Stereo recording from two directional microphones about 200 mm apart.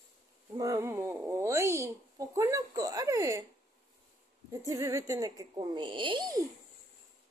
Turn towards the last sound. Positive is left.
turn(degrees=-20)  # may be behind; listen again after turning